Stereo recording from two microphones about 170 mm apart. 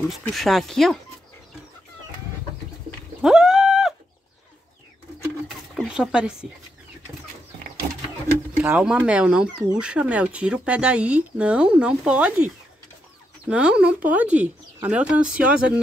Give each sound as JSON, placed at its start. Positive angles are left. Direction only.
{"t": 0.3, "sound": "speech", "side_deg": 0}
{"t": 3.2, "sound": "cat", "side_deg": -5}
{"t": 5.8, "sound": "a sound", "side_deg": -5}
{"t": 8.5, "sound": "speech", "side_deg": -5}
{"t": 13.5, "sound": "speech", "side_deg": -5}